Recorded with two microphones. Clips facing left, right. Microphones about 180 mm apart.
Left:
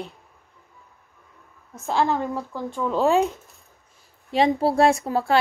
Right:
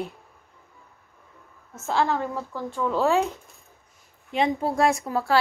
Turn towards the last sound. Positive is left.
turn(degrees=25)  # may be behind; listen again after turning